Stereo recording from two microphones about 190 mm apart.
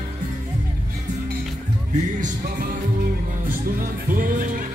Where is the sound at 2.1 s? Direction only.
45° right (ahead or behind).